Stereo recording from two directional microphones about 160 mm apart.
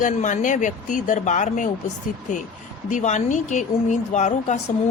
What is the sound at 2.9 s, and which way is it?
A woman's voice, 50° left (ahead or behind).